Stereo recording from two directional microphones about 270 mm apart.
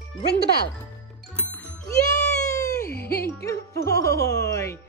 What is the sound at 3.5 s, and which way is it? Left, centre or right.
Speech, centre.